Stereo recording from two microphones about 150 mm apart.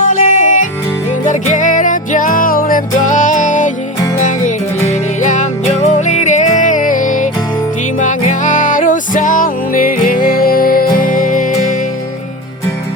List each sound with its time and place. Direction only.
0.0 s music: 55° left (ahead or behind)